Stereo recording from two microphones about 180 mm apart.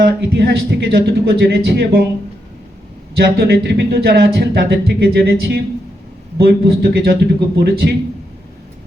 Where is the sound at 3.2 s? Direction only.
60° right (ahead or behind).